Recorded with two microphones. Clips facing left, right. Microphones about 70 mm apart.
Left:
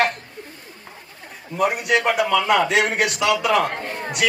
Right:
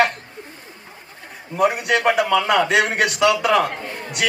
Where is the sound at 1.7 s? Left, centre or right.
Right.